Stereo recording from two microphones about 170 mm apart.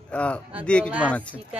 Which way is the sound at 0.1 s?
5° left (ahead or behind).